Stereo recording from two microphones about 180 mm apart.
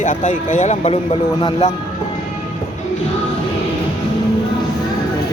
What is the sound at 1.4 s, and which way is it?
Speech, 25° left (ahead or behind).